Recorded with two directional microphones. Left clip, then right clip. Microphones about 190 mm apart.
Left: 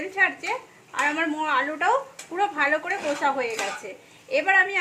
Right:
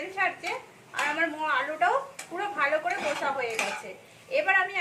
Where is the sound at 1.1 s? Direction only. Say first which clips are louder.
Left 3 dB; 45° left (ahead or behind).